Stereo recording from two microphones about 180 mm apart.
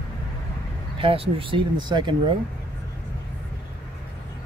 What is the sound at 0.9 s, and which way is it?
Speech, 30° right (ahead or behind).